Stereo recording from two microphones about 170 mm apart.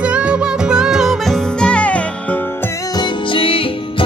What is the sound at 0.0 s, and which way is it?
Music, 5° right (ahead or behind).